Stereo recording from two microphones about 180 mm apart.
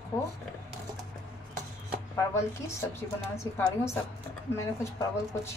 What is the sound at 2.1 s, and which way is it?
A woman's voice, 15° left (ahead or behind).